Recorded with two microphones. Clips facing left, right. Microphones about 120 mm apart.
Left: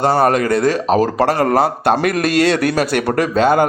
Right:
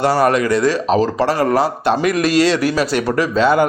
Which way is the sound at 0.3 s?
50° left (ahead or behind).